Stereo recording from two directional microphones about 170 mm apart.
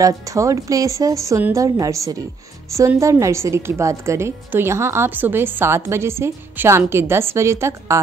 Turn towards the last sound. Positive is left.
turn(degrees=-15)  # may be behind; listen again after turning